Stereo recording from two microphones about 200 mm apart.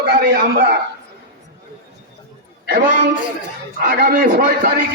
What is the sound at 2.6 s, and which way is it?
A man's voice, 55° right (ahead or behind).